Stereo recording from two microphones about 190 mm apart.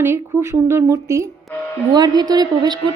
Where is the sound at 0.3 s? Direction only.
15° right (ahead or behind).